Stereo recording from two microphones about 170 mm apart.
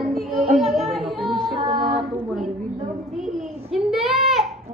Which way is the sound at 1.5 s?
35° right (ahead or behind).